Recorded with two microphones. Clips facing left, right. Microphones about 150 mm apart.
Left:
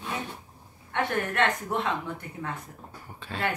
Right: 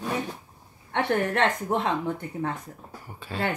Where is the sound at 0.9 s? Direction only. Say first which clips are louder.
Right 4 dB; 35° right (ahead or behind).